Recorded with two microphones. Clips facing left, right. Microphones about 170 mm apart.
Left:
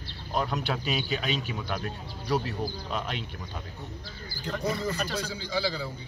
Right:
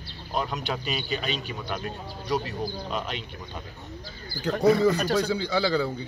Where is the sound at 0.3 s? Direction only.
Centre (ahead or behind).